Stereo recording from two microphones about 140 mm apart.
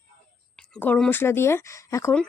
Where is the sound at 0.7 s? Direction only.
10° left (ahead or behind).